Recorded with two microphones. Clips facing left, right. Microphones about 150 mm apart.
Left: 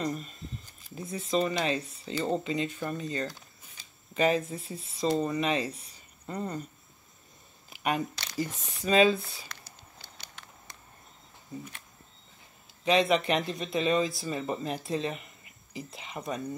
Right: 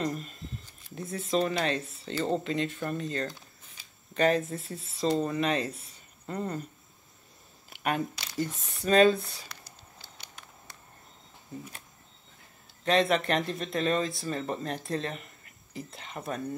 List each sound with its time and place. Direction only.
0.0 s speech: centre (ahead or behind)
7.7 s speech: centre (ahead or behind)
10.2 s walk: 10° right (ahead or behind)
12.8 s speech: centre (ahead or behind)